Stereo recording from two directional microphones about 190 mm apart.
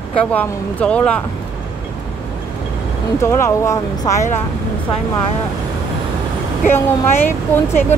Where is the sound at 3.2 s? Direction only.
15° left (ahead or behind).